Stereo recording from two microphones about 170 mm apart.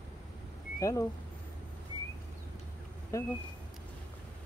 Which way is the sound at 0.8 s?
20° left (ahead or behind).